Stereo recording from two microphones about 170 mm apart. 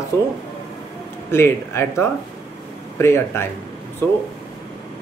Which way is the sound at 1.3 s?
15° left (ahead or behind).